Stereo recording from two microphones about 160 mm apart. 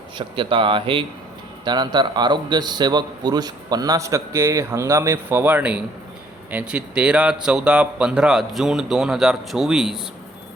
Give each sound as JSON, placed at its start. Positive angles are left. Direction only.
{"t": 0.2, "sound": "a man's voice", "side_deg": -30}